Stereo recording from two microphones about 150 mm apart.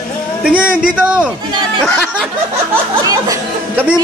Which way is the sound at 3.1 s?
20° right (ahead or behind).